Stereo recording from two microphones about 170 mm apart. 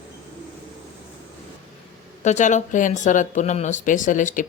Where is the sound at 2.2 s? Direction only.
45° left (ahead or behind).